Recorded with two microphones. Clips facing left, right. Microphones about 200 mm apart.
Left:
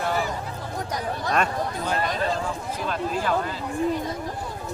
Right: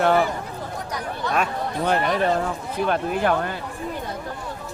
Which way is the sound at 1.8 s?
65° right (ahead or behind).